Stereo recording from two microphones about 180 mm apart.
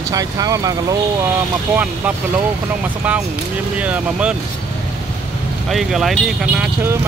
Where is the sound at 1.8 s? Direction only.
10° right (ahead or behind).